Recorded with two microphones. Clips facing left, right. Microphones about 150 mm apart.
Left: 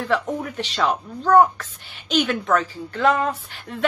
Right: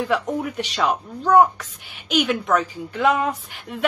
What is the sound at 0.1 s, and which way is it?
Speech, 5° right (ahead or behind).